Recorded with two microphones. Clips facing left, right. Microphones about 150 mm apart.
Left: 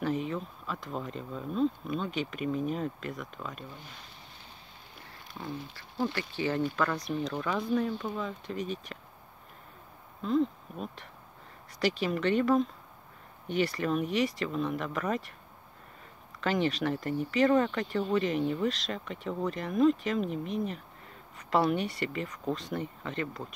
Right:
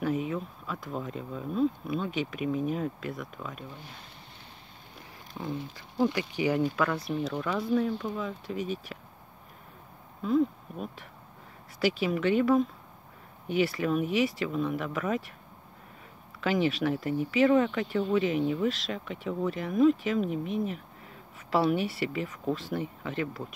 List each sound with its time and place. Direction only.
0.0 s speech: 5° right (ahead or behind)
5.4 s speech: 15° right (ahead or behind)
10.2 s speech: 5° right (ahead or behind)
16.3 s speech: 5° right (ahead or behind)